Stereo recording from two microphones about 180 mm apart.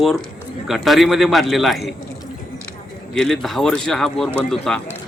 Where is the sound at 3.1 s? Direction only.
5° left (ahead or behind).